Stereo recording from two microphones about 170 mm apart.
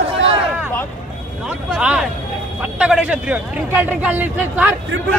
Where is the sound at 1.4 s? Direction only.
5° right (ahead or behind).